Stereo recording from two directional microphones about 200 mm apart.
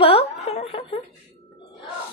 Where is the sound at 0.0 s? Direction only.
30° left (ahead or behind).